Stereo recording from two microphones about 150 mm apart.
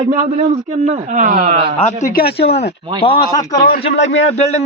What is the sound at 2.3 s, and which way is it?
Speech, 40° left (ahead or behind).